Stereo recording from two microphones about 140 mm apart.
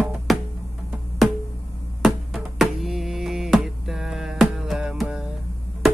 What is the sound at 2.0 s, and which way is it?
Music, centre (ahead or behind).